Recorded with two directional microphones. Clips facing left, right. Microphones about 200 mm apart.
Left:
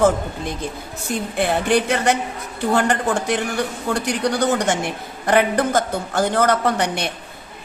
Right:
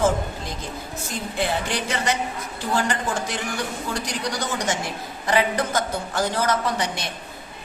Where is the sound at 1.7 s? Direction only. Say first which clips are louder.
Left 8 dB; 55° left (ahead or behind).